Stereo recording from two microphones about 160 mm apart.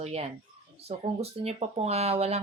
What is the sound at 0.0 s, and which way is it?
Speech, 40° right (ahead or behind).